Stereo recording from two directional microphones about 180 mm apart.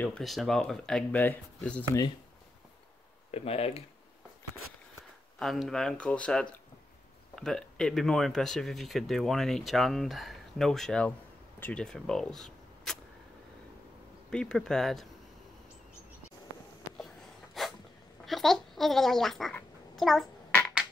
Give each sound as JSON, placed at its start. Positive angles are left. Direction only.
{"t": 0.0, "sound": "speech", "side_deg": 5}
{"t": 3.3, "sound": "speech", "side_deg": 35}
{"t": 5.4, "sound": "speech", "side_deg": 0}
{"t": 14.3, "sound": "speech", "side_deg": 5}
{"t": 17.6, "sound": "a sound", "side_deg": 0}